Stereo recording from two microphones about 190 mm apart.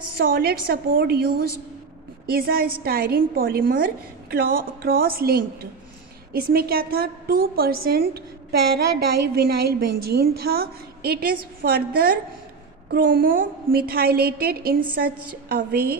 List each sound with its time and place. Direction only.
0.2 s a woman's voice: 50° right (ahead or behind)